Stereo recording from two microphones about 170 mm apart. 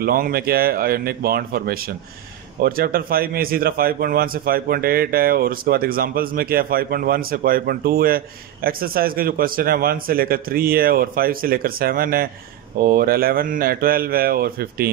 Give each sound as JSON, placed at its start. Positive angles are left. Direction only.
{"t": 0.0, "sound": "a man's voice", "side_deg": -60}